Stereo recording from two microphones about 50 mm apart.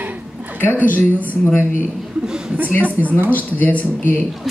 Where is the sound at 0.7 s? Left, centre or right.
Left.